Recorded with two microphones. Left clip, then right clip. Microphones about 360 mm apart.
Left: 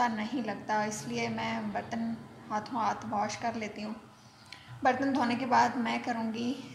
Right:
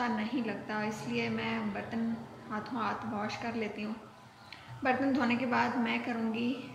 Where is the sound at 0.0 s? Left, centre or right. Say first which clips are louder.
Left 3 dB; centre.